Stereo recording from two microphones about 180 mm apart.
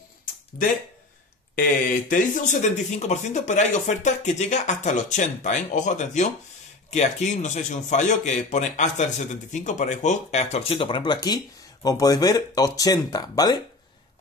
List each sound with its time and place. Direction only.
1.5 s speech: 50° left (ahead or behind); by 13.6 s 20° left (ahead or behind)